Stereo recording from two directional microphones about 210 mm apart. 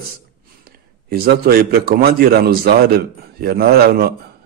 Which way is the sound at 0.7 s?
45° right (ahead or behind).